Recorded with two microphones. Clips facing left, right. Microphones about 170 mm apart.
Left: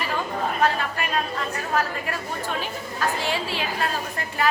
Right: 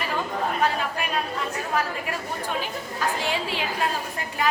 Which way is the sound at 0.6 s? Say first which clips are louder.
Left 1 dB; 10° right (ahead or behind).